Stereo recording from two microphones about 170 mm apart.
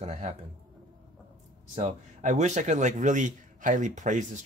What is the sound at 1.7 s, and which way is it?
Speech, 45° right (ahead or behind).